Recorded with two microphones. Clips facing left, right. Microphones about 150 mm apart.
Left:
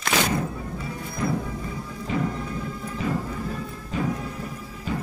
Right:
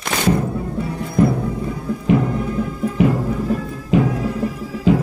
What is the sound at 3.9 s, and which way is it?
Music, 90° right.